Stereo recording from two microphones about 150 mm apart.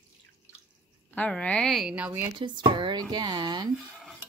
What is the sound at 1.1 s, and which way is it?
A woman's voice, 10° left (ahead or behind).